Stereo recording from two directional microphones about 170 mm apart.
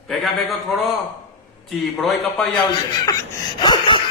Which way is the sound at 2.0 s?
Centre (ahead or behind).